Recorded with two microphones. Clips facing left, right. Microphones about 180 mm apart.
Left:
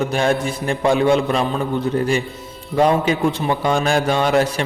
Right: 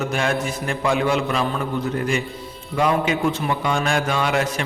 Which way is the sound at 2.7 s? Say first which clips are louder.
Left 4 dB; 35° left (ahead or behind).